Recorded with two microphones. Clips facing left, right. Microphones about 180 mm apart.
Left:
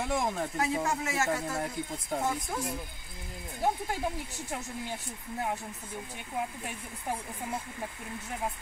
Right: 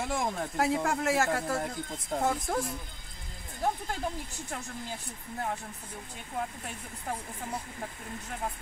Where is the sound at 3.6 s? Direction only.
10° left (ahead or behind).